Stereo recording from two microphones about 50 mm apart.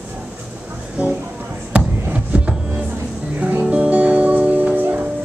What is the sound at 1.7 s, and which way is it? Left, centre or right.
Music, right.